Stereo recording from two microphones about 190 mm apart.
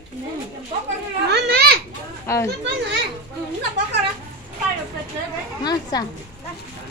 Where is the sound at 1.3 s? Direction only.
60° right (ahead or behind).